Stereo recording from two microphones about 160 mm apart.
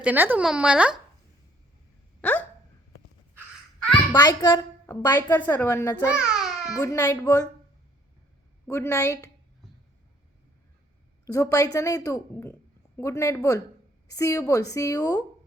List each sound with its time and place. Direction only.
0.0 s speech: 10° right (ahead or behind)
2.2 s hiccup: 10° left (ahead or behind)
4.1 s a woman's voice: 25° left (ahead or behind)
6.1 s babbling: 5° right (ahead or behind)
6.7 s a woman's voice: 20° left (ahead or behind)
8.7 s a woman's voice: 15° left (ahead or behind)
11.3 s a woman's voice: 20° left (ahead or behind)